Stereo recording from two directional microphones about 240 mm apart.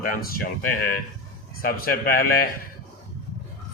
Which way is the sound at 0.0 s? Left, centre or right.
Left.